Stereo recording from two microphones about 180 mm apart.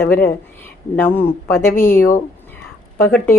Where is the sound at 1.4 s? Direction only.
15° left (ahead or behind).